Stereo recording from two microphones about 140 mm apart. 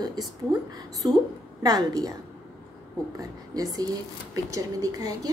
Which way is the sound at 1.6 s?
30° right (ahead or behind).